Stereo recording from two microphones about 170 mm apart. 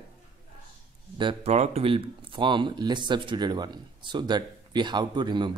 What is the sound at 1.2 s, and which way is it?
A man's voice, 35° right (ahead or behind).